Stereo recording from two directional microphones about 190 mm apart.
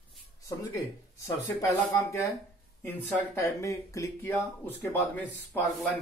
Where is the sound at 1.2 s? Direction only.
15° left (ahead or behind).